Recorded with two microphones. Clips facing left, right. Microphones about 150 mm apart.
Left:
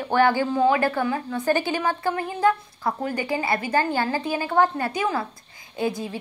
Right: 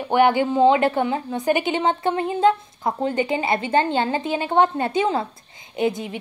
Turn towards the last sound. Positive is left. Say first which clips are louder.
# right 3 dB
turn(degrees=-20)  # may be behind; listen again after turning